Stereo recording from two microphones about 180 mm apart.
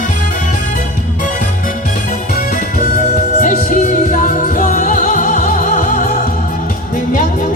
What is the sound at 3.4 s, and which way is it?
Music, 45° left (ahead or behind).